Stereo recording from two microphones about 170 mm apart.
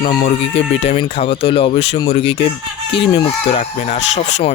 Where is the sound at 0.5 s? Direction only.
35° left (ahead or behind).